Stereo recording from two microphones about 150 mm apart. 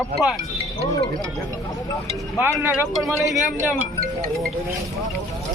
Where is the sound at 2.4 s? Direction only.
15° right (ahead or behind).